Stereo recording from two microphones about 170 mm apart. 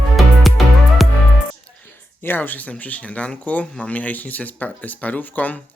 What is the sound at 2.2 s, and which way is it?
Speech, 10° left (ahead or behind).